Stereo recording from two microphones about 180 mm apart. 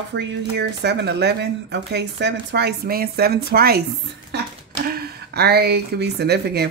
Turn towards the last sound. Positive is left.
turn(degrees=-65)  # may be behind; listen again after turning